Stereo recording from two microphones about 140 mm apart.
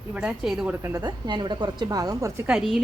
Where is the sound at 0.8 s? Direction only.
25° right (ahead or behind).